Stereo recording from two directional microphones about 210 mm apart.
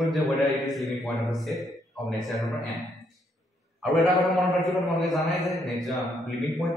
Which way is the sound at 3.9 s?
Centre (ahead or behind).